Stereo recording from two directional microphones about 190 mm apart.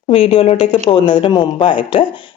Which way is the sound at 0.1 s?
30° left (ahead or behind).